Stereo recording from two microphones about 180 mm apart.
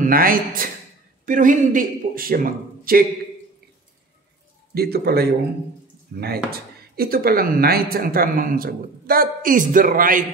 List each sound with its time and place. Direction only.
0.0 s a man's voice: 50° right (ahead or behind)
4.7 s speech: 60° right (ahead or behind)